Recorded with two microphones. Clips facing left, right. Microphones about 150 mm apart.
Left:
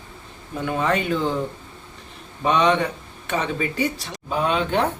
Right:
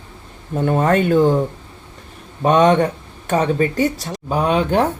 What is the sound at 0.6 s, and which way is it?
Speech, 45° right (ahead or behind).